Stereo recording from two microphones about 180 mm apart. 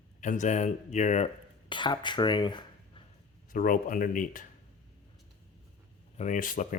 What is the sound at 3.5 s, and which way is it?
Speech, 50° left (ahead or behind).